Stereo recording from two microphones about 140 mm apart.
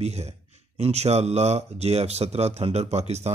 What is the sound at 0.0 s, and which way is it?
Speech, 50° right (ahead or behind).